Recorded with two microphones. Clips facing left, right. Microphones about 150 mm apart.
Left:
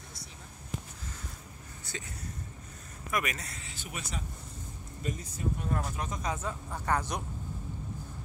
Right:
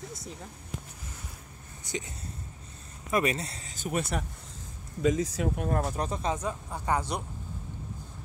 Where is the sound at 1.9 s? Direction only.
15° right (ahead or behind).